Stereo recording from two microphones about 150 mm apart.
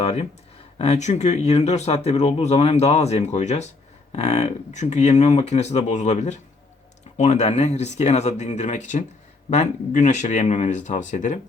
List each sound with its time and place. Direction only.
0.0 s speech: 45° left (ahead or behind)